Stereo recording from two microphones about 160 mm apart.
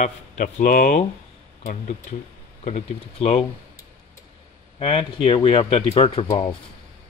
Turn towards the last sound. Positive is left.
turn(degrees=35)  # may be behind; listen again after turning